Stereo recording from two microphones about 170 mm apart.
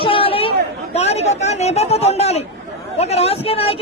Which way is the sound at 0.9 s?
40° left (ahead or behind).